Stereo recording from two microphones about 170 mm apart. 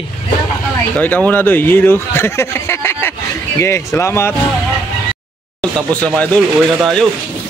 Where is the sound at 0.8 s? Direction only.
10° left (ahead or behind).